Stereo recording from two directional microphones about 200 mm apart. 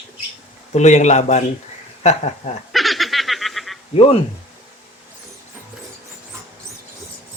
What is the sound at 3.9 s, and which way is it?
Speech, 30° left (ahead or behind).